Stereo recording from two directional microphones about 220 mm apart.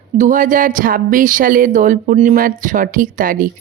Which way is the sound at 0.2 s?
35° right (ahead or behind).